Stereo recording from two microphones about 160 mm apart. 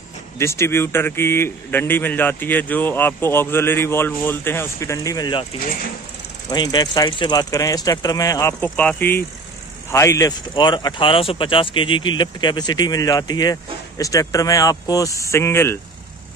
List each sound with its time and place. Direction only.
0.4 s speech: 15° left (ahead or behind)
6.5 s speech: 25° left (ahead or behind)